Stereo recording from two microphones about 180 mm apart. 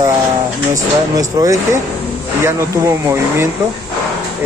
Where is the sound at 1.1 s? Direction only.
20° right (ahead or behind).